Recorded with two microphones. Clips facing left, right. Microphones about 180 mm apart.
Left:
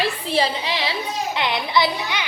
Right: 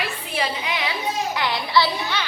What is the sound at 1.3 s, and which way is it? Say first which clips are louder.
Speech: left 1 dB; 20° left (ahead or behind).